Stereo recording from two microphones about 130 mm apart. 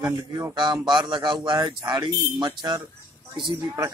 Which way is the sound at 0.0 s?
25° right (ahead or behind).